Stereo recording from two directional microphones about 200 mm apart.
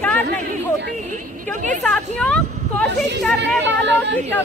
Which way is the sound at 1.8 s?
5° left (ahead or behind).